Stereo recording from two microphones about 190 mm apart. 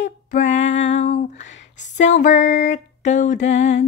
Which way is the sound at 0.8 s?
35° left (ahead or behind).